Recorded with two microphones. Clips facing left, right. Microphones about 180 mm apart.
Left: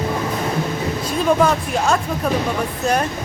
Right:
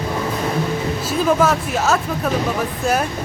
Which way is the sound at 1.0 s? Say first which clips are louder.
Even; 5° right (ahead or behind).